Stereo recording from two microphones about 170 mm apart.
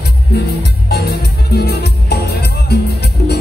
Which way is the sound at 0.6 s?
75° left (ahead or behind).